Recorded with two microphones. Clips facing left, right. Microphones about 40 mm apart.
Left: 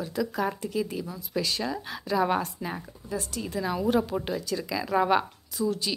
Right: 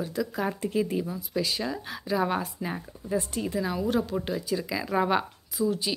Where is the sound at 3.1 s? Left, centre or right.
Right.